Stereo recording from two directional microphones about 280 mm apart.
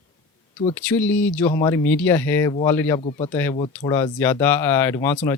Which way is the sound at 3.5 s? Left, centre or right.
Centre.